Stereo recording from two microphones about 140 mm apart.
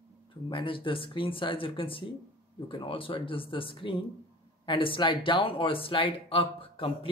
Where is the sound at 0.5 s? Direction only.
40° left (ahead or behind).